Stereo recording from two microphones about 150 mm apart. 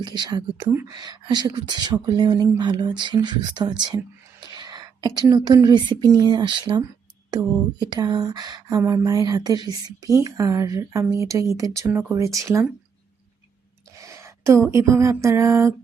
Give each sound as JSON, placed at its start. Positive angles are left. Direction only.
{"t": 0.0, "sound": "speech", "side_deg": -30}
{"t": 11.9, "sound": "speech", "side_deg": -10}
{"t": 12.1, "sound": "speech", "side_deg": -20}
{"t": 14.1, "sound": "a sound", "side_deg": -20}